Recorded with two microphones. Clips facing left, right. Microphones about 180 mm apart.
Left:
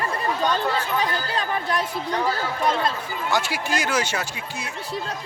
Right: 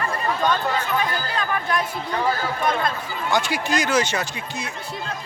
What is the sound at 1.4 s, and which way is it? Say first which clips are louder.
Speech: right 2 dB; 35° left (ahead or behind).